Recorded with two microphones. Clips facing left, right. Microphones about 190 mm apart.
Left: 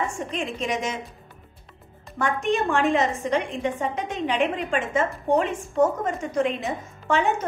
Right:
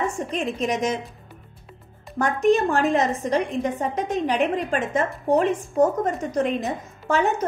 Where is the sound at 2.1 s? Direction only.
40° right (ahead or behind).